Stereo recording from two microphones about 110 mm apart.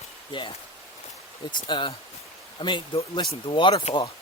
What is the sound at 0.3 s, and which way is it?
Speech, 45° left (ahead or behind).